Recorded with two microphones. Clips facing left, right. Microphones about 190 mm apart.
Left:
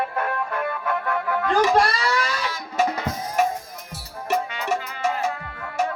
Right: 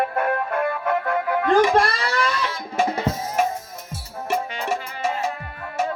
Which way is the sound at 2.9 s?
25° right (ahead or behind).